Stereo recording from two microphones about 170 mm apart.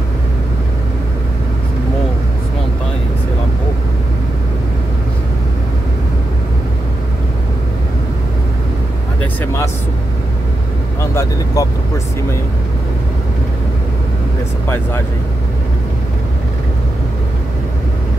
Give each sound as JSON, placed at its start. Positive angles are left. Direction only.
{"t": 11.0, "sound": "vehicle", "side_deg": 15}